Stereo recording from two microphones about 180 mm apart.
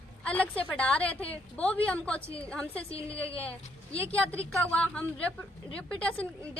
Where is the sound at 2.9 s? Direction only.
30° left (ahead or behind).